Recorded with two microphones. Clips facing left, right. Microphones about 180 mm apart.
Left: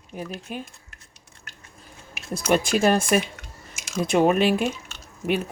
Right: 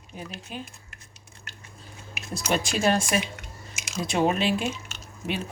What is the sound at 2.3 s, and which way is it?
A woman's voice, 50° left (ahead or behind).